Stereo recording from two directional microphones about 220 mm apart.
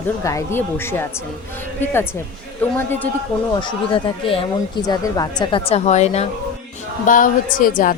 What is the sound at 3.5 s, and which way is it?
Speech, 20° left (ahead or behind).